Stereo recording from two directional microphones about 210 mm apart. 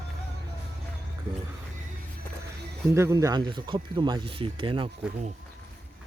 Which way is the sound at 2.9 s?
15° right (ahead or behind).